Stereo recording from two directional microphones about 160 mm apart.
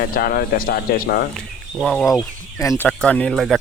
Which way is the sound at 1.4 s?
5° left (ahead or behind).